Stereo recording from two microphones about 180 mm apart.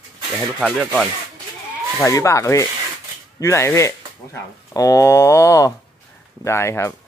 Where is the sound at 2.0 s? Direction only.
15° left (ahead or behind).